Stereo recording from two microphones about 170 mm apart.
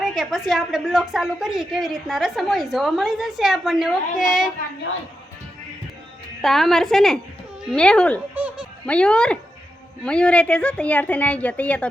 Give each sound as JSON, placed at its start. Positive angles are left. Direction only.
{"t": 0.0, "sound": "a woman's voice", "side_deg": 0}
{"t": 6.4, "sound": "a woman's voice", "side_deg": 0}
{"t": 8.4, "sound": "music", "side_deg": -10}
{"t": 8.9, "sound": "a woman's voice", "side_deg": 5}